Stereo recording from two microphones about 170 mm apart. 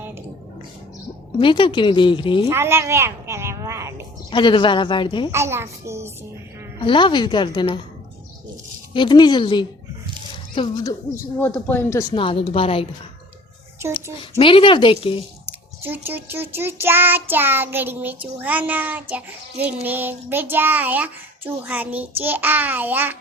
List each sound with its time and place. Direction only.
1.4 s speech: 30° left (ahead or behind)
2.5 s a sound: 15° right (ahead or behind)
4.3 s speech: 30° left (ahead or behind)
5.3 s child singing: 15° right (ahead or behind)
6.7 s speech: 30° left (ahead or behind)
8.9 s speech: 25° left (ahead or behind)
11.3 s a man's voice: 10° left (ahead or behind)
12.1 s speech: 30° left (ahead or behind)
13.9 s speech: 30° left (ahead or behind)
15.4 s child singing: 10° right (ahead or behind)